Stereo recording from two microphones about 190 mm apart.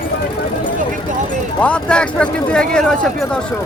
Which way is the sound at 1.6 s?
5° left (ahead or behind).